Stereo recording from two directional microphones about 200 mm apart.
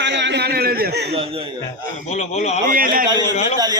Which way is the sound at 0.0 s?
60° right (ahead or behind).